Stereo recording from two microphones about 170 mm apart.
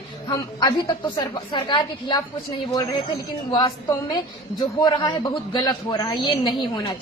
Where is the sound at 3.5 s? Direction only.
25° left (ahead or behind).